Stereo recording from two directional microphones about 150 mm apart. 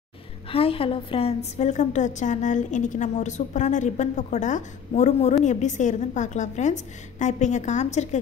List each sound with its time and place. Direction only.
0.5 s a woman's voice: 40° left (ahead or behind)